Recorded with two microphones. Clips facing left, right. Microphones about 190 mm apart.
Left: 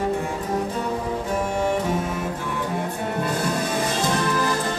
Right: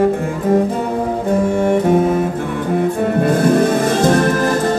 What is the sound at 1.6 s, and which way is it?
Music, 55° right (ahead or behind).